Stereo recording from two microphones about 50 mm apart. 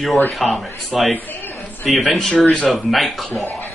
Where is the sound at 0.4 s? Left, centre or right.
Centre.